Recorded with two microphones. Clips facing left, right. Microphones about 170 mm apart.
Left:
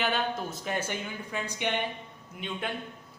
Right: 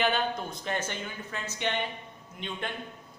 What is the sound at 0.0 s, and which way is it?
Speech, 5° left (ahead or behind).